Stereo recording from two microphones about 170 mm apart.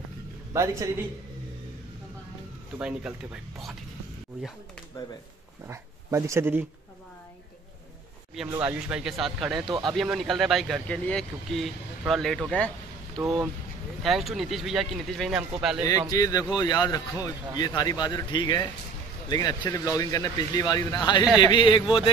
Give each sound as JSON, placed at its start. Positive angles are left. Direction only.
{"t": 0.5, "sound": "a man's voice", "side_deg": -20}
{"t": 2.8, "sound": "speech", "side_deg": -5}
{"t": 5.7, "sound": "speech", "side_deg": -15}
{"t": 8.6, "sound": "speech", "side_deg": -5}
{"t": 9.7, "sound": "speech", "side_deg": -25}
{"t": 9.9, "sound": "speech", "side_deg": 0}
{"t": 16.1, "sound": "a man's voice", "side_deg": 20}